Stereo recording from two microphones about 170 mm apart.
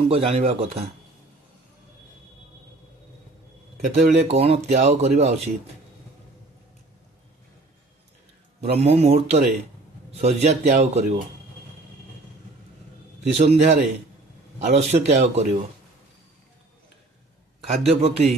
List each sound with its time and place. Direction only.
0.1 s speech: 35° right (ahead or behind)
3.8 s speech: 40° right (ahead or behind)
8.7 s speech: 40° right (ahead or behind)
13.2 s speech: 40° right (ahead or behind)
17.6 s speech: 35° right (ahead or behind)